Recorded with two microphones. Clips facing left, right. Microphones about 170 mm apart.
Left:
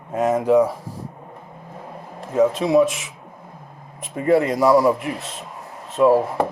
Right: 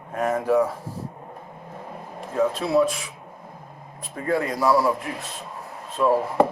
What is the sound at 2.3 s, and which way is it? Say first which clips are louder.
Speech: left 5 dB; 20° left (ahead or behind).